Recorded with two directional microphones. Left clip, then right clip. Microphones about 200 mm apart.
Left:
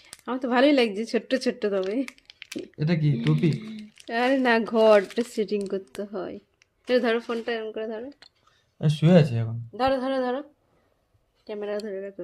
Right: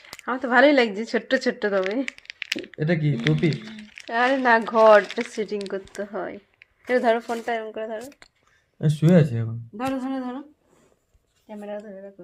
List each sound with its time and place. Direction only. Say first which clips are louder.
0.3 s speech: right 4 dB; 15° left (ahead or behind)
2.7 s speech: right 2 dB; 45° left (ahead or behind)
3.2 s speech: right 3 dB; 15° left (ahead or behind)
4.4 s speech: right 5 dB; 25° left (ahead or behind)
8.8 s speech: even; 10° right (ahead or behind)
9.7 s music: left 5 dB; 55° left (ahead or behind)
11.4 s music: left 4 dB; 55° left (ahead or behind)